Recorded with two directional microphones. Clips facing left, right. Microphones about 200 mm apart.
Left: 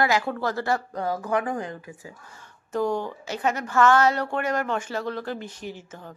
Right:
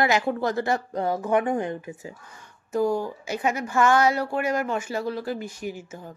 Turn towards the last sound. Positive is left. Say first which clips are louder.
# right 3 dB
turn(degrees=-10)  # may be behind; listen again after turning